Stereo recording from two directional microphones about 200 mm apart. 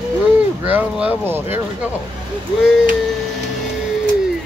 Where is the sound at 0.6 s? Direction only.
5° right (ahead or behind).